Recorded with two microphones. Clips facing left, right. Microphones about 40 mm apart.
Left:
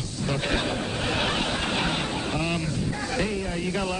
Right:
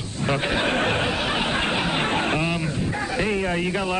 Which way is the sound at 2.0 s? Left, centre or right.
Right.